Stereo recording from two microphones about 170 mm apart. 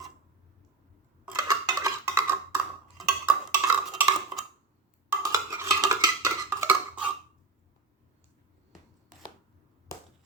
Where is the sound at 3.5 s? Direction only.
10° right (ahead or behind).